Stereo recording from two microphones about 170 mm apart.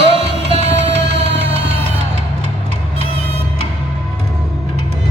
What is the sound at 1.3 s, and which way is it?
Music, 90° right.